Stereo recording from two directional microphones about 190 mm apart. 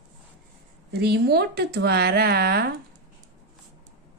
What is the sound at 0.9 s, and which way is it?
A woman's voice, 60° right (ahead or behind).